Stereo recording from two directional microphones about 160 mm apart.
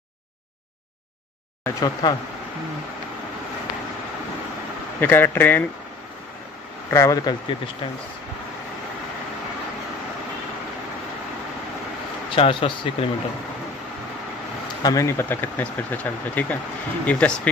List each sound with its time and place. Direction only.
1.6 s speech: 20° left (ahead or behind)
5.0 s speech: 15° left (ahead or behind)
6.9 s speech: 20° left (ahead or behind)
12.3 s speech: 30° left (ahead or behind)
14.8 s speech: 20° left (ahead or behind)